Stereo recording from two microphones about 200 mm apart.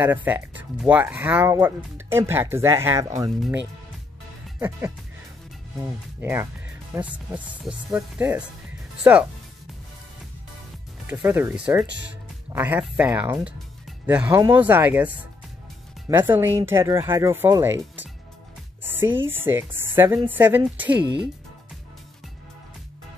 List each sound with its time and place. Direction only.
0.0 s speech: 10° right (ahead or behind)
3.3 s speech: centre (ahead or behind)
4.6 s speech: 10° right (ahead or behind)
6.2 s speech: 10° right (ahead or behind)
11.1 s speech: 10° right (ahead or behind)
11.9 s speech: 60° right (ahead or behind)
12.5 s speech: 10° right (ahead or behind)
18.8 s music: 10° right (ahead or behind)
19.2 s speech: 10° right (ahead or behind)